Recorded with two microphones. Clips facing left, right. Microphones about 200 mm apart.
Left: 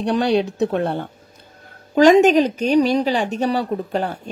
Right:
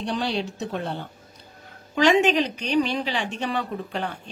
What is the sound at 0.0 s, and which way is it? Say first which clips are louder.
Speech: left 9 dB; 60° left (ahead or behind).